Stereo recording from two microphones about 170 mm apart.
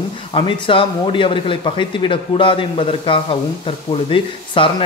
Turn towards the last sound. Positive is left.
turn(degrees=30)  # may be behind; listen again after turning